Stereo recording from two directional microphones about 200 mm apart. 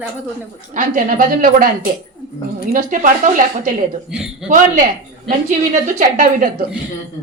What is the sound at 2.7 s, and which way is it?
Speech, 40° right (ahead or behind).